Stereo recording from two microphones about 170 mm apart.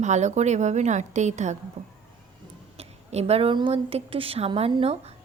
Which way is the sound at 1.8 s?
40° right (ahead or behind).